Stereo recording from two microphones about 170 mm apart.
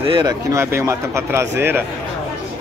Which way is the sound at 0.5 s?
15° right (ahead or behind).